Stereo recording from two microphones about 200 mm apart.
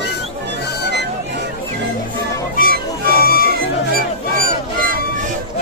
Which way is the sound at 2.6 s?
45° left (ahead or behind).